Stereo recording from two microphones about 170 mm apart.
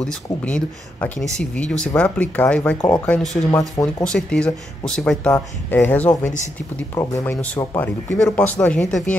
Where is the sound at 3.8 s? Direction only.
5° left (ahead or behind).